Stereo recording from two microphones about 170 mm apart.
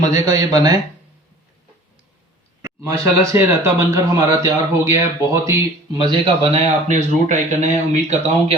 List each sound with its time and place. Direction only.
0.0 s a man's voice: 20° right (ahead or behind)
2.6 s a man's voice: 15° right (ahead or behind); by 8.5 s 45° right (ahead or behind)